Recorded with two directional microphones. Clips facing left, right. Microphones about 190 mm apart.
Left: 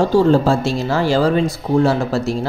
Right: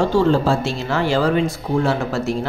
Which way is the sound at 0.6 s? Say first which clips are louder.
Left 3 dB; 35° left (ahead or behind).